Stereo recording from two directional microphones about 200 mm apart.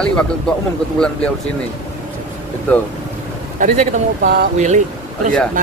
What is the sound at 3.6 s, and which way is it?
Speech, 45° right (ahead or behind).